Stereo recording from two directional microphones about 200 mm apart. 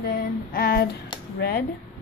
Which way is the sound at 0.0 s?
50° left (ahead or behind).